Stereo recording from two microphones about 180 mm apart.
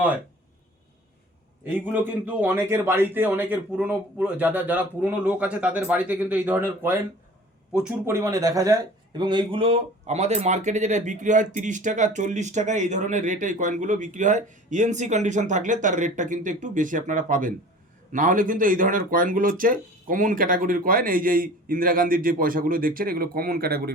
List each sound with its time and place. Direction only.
1.6 s a man's voice: 10° right (ahead or behind); by 23.9 s 60° right (ahead or behind)